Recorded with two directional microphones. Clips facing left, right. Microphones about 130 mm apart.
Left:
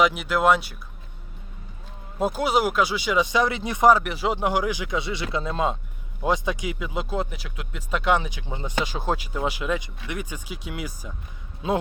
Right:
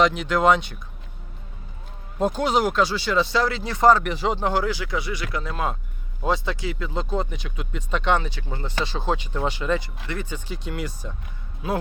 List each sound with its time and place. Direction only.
0.0 s speech: 10° left (ahead or behind)
2.1 s speech: 10° left (ahead or behind)
11.6 s a man's voice: 25° left (ahead or behind)